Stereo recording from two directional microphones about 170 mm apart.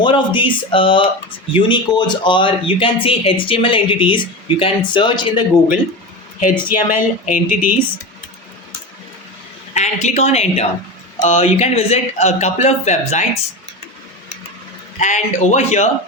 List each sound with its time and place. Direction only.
0.0 s speech: 30° left (ahead or behind)
6.5 s speech: 10° right (ahead or behind)
7.3 s a man's voice: 50° left (ahead or behind)
9.7 s a woman's voice: 40° left (ahead or behind)
14.9 s a man's voice: 45° left (ahead or behind)